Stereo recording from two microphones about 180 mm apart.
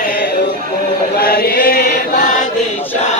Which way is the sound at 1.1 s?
60° left (ahead or behind).